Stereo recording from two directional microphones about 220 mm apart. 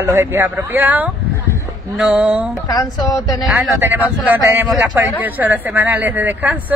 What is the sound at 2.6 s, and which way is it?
Speech, 15° left (ahead or behind).